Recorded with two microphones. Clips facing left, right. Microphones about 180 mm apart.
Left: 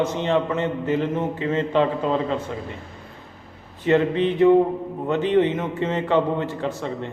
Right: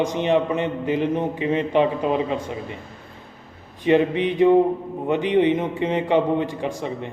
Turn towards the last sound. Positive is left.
turn(degrees=-15)  # may be behind; listen again after turning